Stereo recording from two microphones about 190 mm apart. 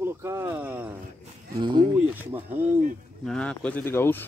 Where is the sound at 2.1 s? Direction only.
10° right (ahead or behind).